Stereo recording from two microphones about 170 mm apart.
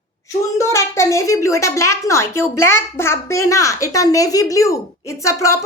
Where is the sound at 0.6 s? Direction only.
15° left (ahead or behind).